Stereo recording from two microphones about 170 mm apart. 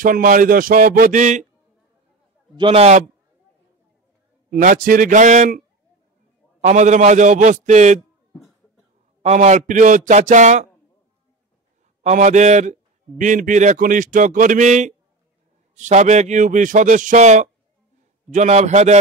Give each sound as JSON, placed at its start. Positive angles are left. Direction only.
{"t": 0.0, "sound": "a man's voice", "side_deg": -55}
{"t": 2.5, "sound": "a man's voice", "side_deg": -30}
{"t": 4.5, "sound": "a man's voice", "side_deg": -50}
{"t": 6.6, "sound": "a man's voice", "side_deg": -45}
{"t": 9.2, "sound": "a man's voice", "side_deg": -45}
{"t": 12.0, "sound": "a man's voice", "side_deg": -45}